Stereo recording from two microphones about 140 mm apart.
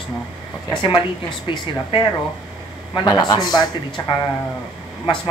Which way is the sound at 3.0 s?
25° left (ahead or behind).